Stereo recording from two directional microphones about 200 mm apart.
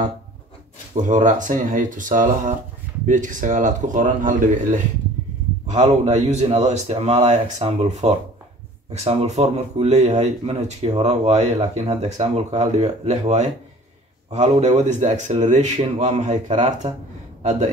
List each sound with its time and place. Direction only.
1.0 s speech: 40° right (ahead or behind)